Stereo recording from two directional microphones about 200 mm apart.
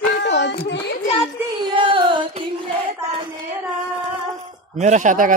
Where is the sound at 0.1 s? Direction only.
60° left (ahead or behind).